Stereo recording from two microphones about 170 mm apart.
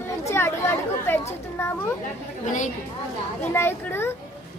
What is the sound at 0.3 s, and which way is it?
Chatter, 15° left (ahead or behind).